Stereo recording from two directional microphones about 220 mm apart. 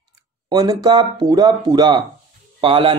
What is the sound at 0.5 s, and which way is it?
Speech, 15° right (ahead or behind).